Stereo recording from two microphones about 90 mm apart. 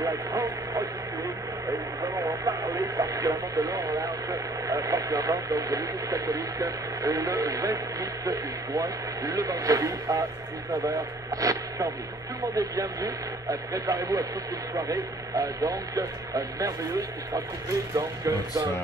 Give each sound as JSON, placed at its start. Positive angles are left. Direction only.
{"t": 0.0, "sound": "radio", "side_deg": -40}
{"t": 2.1, "sound": "speech", "side_deg": -35}
{"t": 17.9, "sound": "speech", "side_deg": -50}